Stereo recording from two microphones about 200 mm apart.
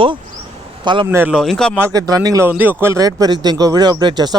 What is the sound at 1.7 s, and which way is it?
A man's voice, 15° right (ahead or behind).